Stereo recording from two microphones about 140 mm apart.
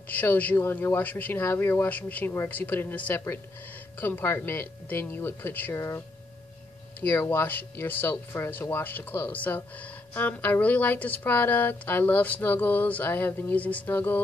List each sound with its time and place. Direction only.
0.1 s speech: 10° left (ahead or behind)